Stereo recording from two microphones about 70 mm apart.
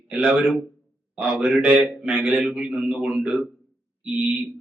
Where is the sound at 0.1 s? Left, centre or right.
Centre.